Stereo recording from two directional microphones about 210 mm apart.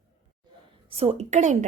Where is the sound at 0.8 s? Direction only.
25° right (ahead or behind).